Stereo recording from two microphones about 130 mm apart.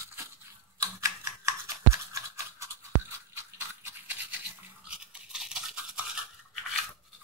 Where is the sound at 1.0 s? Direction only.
20° right (ahead or behind).